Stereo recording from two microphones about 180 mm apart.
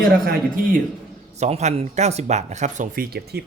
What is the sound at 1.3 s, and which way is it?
Speech, 40° right (ahead or behind).